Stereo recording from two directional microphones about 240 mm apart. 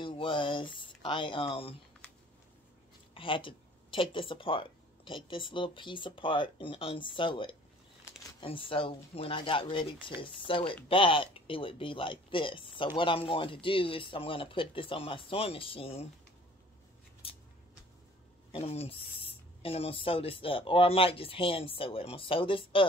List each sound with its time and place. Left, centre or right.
0.0 s speech: left
3.2 s speech: left
17.2 s scissors: left
18.5 s speech: left